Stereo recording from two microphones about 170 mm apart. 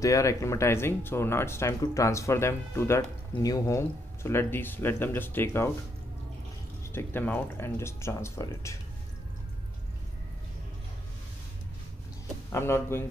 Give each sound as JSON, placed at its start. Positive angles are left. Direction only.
{"t": 0.0, "sound": "speech", "side_deg": 20}
{"t": 6.8, "sound": "speech", "side_deg": 15}
{"t": 12.4, "sound": "speech", "side_deg": 15}